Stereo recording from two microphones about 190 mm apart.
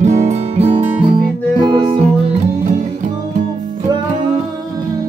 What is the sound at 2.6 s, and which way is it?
Music, 40° right (ahead or behind).